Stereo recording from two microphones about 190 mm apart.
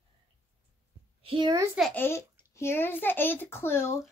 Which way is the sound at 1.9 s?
10° left (ahead or behind).